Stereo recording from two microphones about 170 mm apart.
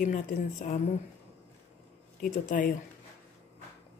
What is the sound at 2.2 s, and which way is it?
Speech, 50° left (ahead or behind).